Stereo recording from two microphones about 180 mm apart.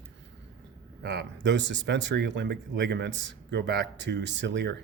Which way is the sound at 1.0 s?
75° right (ahead or behind).